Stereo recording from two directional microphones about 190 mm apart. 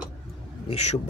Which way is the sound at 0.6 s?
35° left (ahead or behind).